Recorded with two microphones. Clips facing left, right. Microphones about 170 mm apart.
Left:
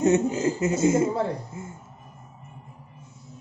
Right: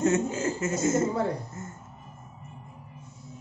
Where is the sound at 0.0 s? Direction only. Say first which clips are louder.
Left 4 dB; 15° left (ahead or behind).